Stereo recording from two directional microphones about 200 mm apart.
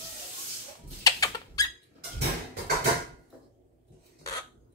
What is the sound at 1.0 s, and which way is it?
Squeak, 20° left (ahead or behind).